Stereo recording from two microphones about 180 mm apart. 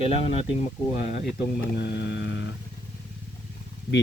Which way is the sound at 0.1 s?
30° left (ahead or behind).